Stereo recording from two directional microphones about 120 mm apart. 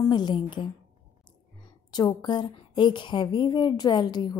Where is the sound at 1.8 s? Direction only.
35° left (ahead or behind).